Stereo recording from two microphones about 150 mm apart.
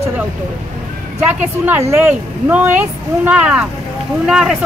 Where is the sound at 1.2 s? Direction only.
10° right (ahead or behind).